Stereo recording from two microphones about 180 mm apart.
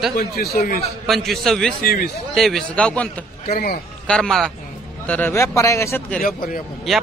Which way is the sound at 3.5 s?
60° left (ahead or behind).